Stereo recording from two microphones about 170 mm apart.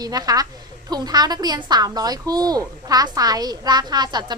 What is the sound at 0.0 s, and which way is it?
A woman's voice, 20° right (ahead or behind).